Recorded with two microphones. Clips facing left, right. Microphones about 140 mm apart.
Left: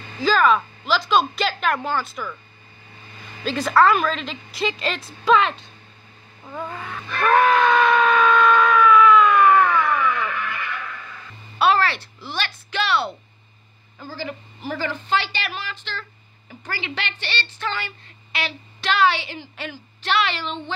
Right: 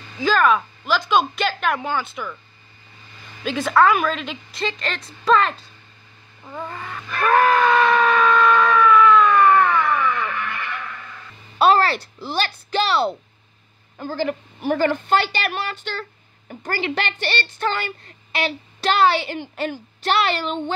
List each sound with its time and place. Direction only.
0.2 s a woman's voice: centre (ahead or behind)
3.5 s a woman's voice: centre (ahead or behind)
6.4 s screaming: 5° left (ahead or behind)
11.5 s a sound: 35° right (ahead or behind)
13.9 s a woman's voice: 55° right (ahead or behind)